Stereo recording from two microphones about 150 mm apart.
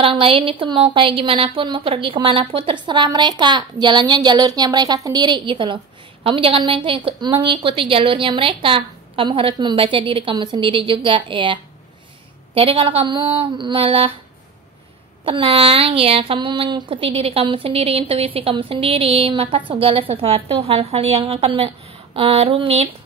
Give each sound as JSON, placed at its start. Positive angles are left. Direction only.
{"t": 0.0, "sound": "speech", "side_deg": -35}
{"t": 15.2, "sound": "speech", "side_deg": -40}